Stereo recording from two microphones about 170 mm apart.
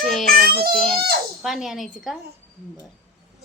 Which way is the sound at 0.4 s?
60° right (ahead or behind).